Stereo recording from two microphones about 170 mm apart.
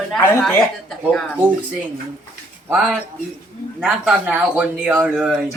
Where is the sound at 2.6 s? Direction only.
5° right (ahead or behind).